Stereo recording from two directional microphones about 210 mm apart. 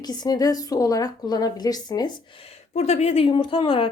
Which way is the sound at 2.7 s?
30° left (ahead or behind).